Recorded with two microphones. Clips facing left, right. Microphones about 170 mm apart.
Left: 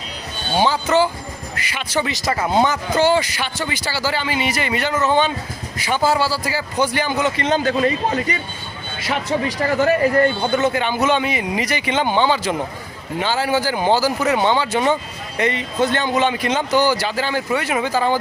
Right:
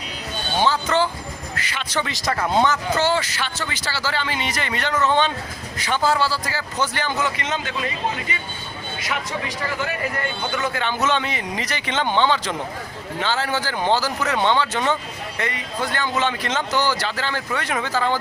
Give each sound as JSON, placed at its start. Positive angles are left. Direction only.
{"t": 0.6, "sound": "speech", "side_deg": 10}
{"t": 7.3, "sound": "a man's voice", "side_deg": 35}
{"t": 9.6, "sound": "a man's voice", "side_deg": 40}
{"t": 10.5, "sound": "speech", "side_deg": 25}
{"t": 15.4, "sound": "speech", "side_deg": 20}